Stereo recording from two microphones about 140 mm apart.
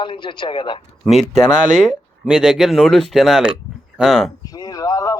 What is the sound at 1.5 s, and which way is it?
Speech, 60° right (ahead or behind).